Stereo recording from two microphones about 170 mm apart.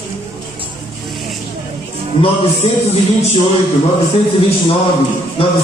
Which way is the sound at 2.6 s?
35° left (ahead or behind).